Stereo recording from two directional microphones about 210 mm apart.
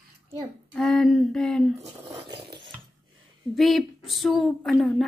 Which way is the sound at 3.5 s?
Centre (ahead or behind).